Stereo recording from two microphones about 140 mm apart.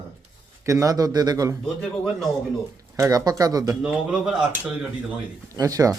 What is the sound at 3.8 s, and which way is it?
Speech, 5° right (ahead or behind).